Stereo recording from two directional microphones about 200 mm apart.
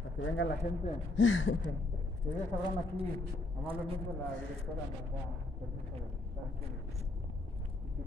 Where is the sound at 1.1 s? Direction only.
70° left (ahead or behind).